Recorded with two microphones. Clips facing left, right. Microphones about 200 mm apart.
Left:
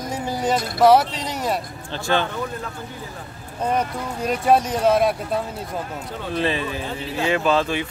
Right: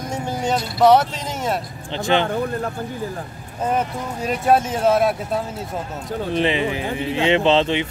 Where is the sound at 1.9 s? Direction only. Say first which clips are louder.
Right 3 dB; 20° right (ahead or behind).